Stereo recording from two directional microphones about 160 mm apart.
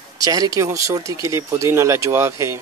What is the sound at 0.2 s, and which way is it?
Speech, 20° right (ahead or behind).